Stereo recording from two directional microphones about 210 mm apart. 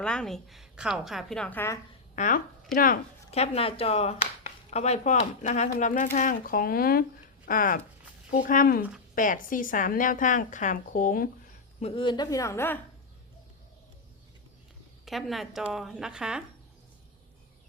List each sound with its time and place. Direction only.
0.0 s a woman's voice: 5° left (ahead or behind)
2.1 s a woman's voice: 35° left (ahead or behind)
11.8 s a woman's voice: 25° left (ahead or behind); by 12.8 s 10° left (ahead or behind)
15.0 s a woman's voice: centre (ahead or behind)